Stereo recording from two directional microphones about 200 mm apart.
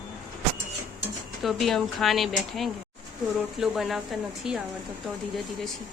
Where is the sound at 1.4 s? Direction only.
Centre (ahead or behind).